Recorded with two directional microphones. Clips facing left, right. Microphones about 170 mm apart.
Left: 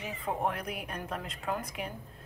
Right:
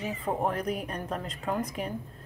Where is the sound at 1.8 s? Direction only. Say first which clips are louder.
Right 4 dB; 35° right (ahead or behind).